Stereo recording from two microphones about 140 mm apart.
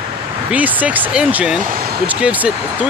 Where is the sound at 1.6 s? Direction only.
90° right.